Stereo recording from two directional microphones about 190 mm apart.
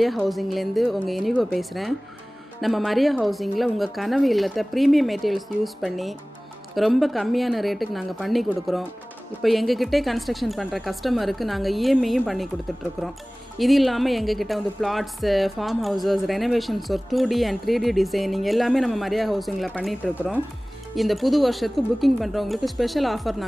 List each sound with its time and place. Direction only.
0.0 s a woman's voice: centre (ahead or behind)
13.6 s a woman's voice: centre (ahead or behind)